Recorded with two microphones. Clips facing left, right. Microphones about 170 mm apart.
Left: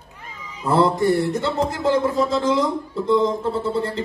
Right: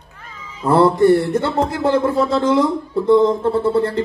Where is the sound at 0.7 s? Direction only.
55° right (ahead or behind).